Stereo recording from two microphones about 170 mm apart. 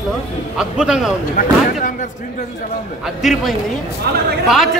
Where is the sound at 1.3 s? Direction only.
55° left (ahead or behind).